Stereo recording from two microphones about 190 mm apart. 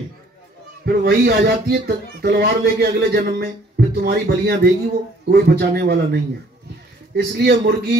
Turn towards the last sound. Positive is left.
turn(degrees=-60)  # may be behind; listen again after turning